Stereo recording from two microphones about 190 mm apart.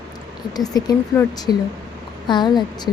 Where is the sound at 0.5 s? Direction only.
20° left (ahead or behind).